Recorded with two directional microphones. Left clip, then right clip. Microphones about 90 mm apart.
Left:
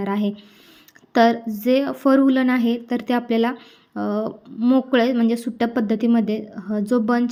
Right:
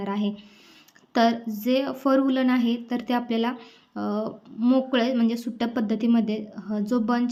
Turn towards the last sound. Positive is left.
turn(degrees=50)  # may be behind; listen again after turning